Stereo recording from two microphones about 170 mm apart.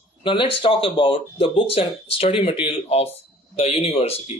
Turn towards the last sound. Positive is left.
turn(degrees=40)  # may be behind; listen again after turning